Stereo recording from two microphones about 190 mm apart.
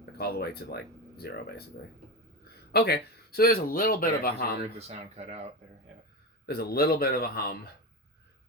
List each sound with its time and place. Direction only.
0.0 s speech: 55° left (ahead or behind)
2.7 s speech: 60° left (ahead or behind)
4.8 s speech: 35° right (ahead or behind)
6.4 s a man's voice: 55° left (ahead or behind)